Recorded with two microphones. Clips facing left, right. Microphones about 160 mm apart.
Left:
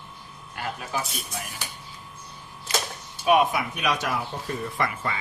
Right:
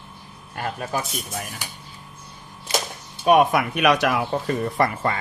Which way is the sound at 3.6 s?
65° right (ahead or behind).